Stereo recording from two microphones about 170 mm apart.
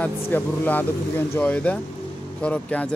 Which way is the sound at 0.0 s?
10° left (ahead or behind).